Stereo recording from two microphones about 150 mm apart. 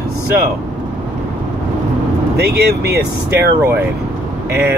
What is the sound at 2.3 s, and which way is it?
Speech, 90° right.